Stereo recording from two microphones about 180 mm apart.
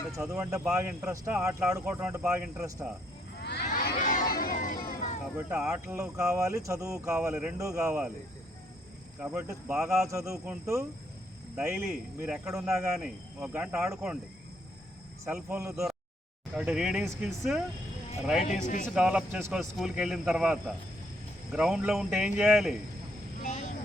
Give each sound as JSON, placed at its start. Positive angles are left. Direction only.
{"t": 0.2, "sound": "speech", "side_deg": -15}
{"t": 3.7, "sound": "crowd", "side_deg": 50}
{"t": 4.4, "sound": "music", "side_deg": 50}
{"t": 4.9, "sound": "a sound", "side_deg": 45}
{"t": 5.5, "sound": "speech", "side_deg": -10}
{"t": 9.2, "sound": "speech", "side_deg": -10}
{"t": 15.2, "sound": "speech", "side_deg": -10}
{"t": 18.9, "sound": "speech", "side_deg": -5}
{"t": 23.4, "sound": "vehicle", "side_deg": 45}